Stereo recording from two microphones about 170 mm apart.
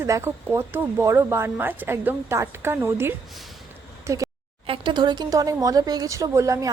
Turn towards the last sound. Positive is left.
turn(degrees=-20)  # may be behind; listen again after turning